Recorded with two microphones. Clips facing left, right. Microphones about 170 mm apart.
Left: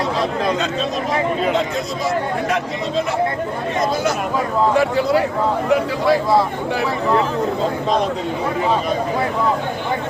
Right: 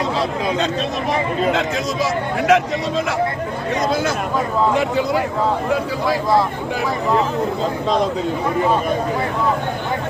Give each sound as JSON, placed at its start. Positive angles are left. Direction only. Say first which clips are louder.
{"t": 2.5, "sound": "speech", "louder": "right 10 dB", "side_deg": -80}